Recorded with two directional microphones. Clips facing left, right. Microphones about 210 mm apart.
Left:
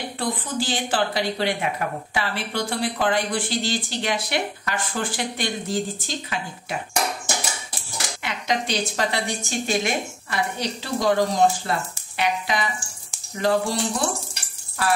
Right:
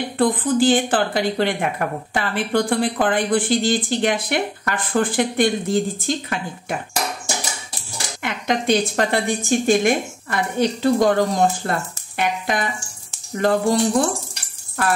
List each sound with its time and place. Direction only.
0.2 s speech: 55° right (ahead or behind)
8.2 s speech: 50° right (ahead or behind)